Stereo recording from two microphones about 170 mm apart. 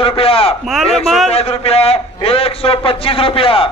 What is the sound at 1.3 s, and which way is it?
A man's voice, 35° left (ahead or behind).